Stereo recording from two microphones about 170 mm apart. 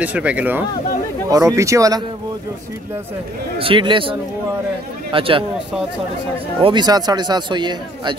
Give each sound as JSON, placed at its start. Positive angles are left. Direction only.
{"t": 0.0, "sound": "speech", "side_deg": -10}
{"t": 1.3, "sound": "speech", "side_deg": -20}
{"t": 3.5, "sound": "speech", "side_deg": -30}
{"t": 6.6, "sound": "speech", "side_deg": -25}